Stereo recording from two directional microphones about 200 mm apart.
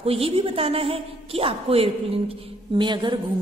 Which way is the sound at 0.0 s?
30° right (ahead or behind).